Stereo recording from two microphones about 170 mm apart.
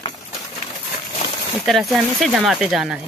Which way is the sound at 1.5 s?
Centre (ahead or behind).